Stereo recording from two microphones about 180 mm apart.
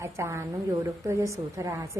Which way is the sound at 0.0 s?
15° right (ahead or behind).